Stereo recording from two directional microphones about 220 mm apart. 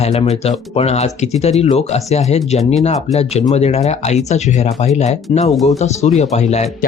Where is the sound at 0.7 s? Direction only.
30° left (ahead or behind).